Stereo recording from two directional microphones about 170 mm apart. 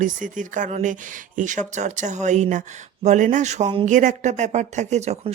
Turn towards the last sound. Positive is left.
turn(degrees=-40)  # may be behind; listen again after turning